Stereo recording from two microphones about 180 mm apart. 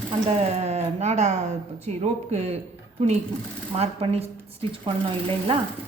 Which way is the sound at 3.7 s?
35° right (ahead or behind).